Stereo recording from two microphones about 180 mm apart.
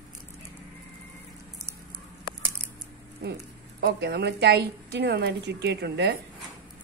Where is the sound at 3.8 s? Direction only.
65° right (ahead or behind).